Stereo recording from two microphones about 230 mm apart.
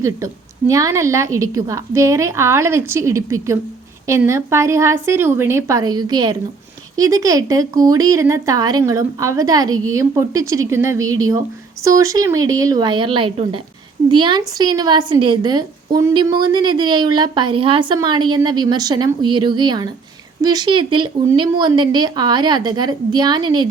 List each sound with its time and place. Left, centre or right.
0.7 s a woman's voice: centre